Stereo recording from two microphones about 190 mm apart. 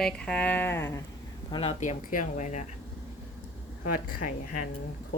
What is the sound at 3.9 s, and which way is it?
Speech, 45° left (ahead or behind).